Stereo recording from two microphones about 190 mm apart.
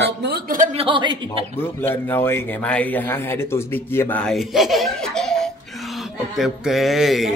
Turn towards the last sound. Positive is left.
turn(degrees=0)  # may be behind; listen again after turning